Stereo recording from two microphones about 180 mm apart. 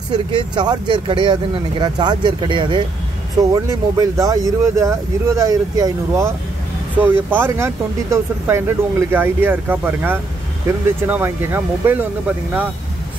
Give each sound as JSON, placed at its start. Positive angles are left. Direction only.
{"t": 0.1, "sound": "speech", "side_deg": -25}